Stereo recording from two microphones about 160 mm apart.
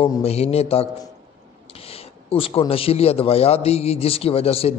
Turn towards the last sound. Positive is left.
turn(degrees=40)  # may be behind; listen again after turning